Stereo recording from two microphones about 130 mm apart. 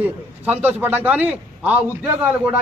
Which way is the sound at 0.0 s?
10° right (ahead or behind).